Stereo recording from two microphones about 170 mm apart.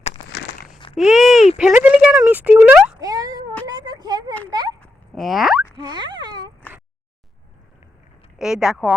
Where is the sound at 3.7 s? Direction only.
25° right (ahead or behind).